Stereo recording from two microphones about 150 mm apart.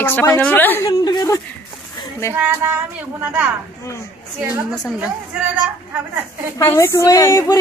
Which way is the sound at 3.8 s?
20° left (ahead or behind).